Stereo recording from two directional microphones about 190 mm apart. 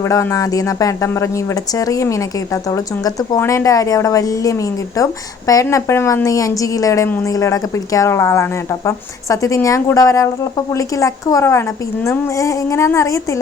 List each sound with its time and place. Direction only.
0.0 s a woman's voice: 15° left (ahead or behind)